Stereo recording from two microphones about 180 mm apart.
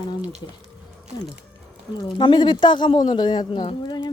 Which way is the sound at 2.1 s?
25° left (ahead or behind).